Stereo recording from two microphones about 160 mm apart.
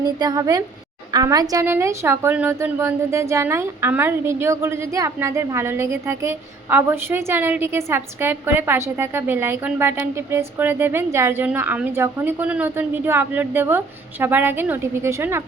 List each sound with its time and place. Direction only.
0.0 s a woman's voice: 25° right (ahead or behind)